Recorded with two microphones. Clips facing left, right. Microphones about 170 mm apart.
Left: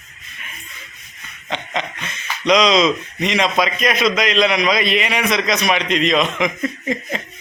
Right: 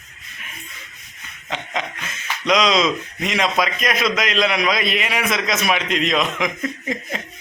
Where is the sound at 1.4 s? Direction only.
5° right (ahead or behind).